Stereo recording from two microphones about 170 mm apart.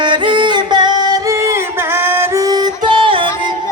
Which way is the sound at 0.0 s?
25° right (ahead or behind).